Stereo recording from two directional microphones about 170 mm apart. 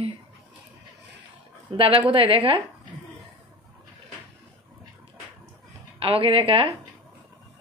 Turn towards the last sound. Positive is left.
turn(degrees=-30)  # may be behind; listen again after turning